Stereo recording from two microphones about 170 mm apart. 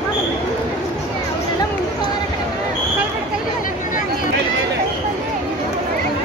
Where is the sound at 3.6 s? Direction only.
50° left (ahead or behind).